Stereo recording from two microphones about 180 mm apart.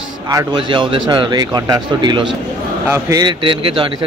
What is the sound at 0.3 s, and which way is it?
A man's voice, 20° right (ahead or behind).